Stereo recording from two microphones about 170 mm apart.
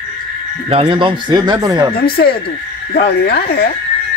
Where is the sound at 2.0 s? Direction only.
60° left (ahead or behind).